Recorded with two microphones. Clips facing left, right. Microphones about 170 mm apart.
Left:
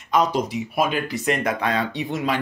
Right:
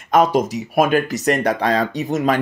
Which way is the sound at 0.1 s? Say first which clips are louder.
Right 5 dB; 50° right (ahead or behind).